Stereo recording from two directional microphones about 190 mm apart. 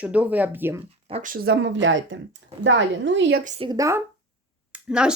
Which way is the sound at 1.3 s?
65° right (ahead or behind).